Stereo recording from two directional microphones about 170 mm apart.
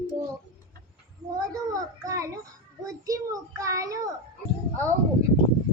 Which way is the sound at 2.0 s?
20° right (ahead or behind).